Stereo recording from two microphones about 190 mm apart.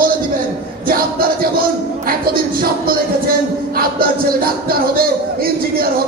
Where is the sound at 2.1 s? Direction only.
50° right (ahead or behind).